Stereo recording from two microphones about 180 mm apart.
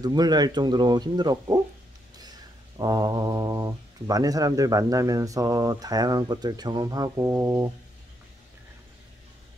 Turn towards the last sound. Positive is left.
turn(degrees=-20)  # may be behind; listen again after turning